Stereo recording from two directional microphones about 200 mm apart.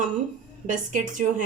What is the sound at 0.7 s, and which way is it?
Speech, 40° right (ahead or behind).